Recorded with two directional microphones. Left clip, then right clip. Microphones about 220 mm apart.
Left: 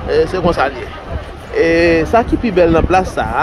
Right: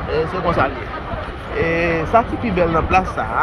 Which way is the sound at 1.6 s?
25° left (ahead or behind).